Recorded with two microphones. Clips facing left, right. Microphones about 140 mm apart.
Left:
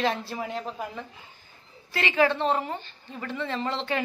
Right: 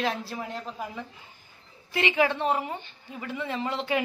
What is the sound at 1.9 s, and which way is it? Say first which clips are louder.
A woman's voice: left 1 dB; 20° right (ahead or behind).